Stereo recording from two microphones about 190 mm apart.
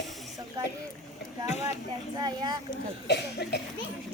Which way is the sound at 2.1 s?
20° right (ahead or behind).